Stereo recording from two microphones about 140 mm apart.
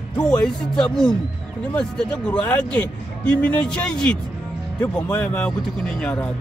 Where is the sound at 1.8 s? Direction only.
10° left (ahead or behind).